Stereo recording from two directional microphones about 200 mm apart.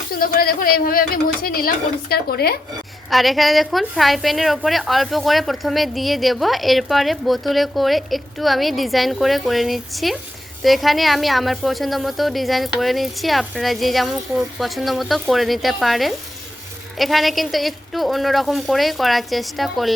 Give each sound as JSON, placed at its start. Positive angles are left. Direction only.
{"t": 0.1, "sound": "speech", "side_deg": 45}
{"t": 3.1, "sound": "a woman's voice", "side_deg": 0}